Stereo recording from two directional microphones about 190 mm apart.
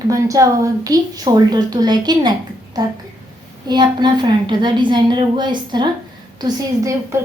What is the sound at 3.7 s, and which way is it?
A woman's voice, 20° right (ahead or behind).